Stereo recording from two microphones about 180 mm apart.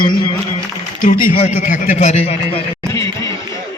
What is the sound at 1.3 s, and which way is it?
A man's voice, 40° left (ahead or behind).